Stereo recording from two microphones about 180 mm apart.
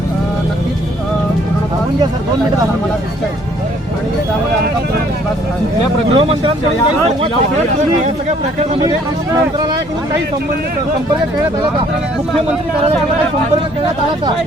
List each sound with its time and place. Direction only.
6.1 s speech: 30° right (ahead or behind)